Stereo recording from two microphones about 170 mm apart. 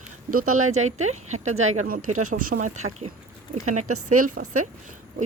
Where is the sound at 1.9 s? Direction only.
50° right (ahead or behind).